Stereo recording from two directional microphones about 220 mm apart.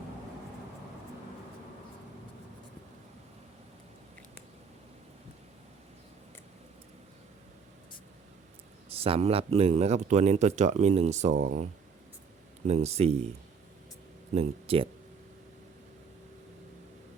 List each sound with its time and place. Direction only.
8.9 s speech: 25° right (ahead or behind)
11.3 s speech: 50° right (ahead or behind)
12.6 s speech: 30° right (ahead or behind)
14.3 s speech: 25° right (ahead or behind)